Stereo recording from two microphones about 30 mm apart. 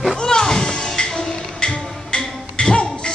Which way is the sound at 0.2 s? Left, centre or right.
Left.